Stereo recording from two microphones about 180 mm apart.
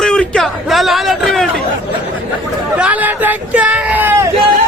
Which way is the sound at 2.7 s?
5° right (ahead or behind).